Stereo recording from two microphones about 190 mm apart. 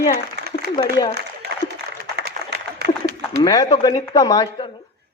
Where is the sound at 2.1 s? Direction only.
60° right (ahead or behind).